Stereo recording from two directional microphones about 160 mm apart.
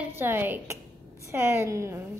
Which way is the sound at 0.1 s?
15° right (ahead or behind).